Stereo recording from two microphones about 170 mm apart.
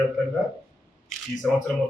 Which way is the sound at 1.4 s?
5° left (ahead or behind).